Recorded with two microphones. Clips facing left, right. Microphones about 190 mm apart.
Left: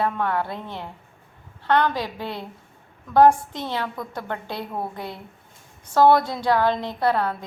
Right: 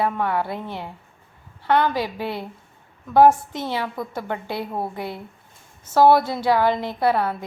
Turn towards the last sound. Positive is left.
turn(degrees=-10)  # may be behind; listen again after turning